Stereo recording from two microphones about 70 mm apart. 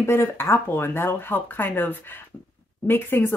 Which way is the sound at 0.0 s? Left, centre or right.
Left.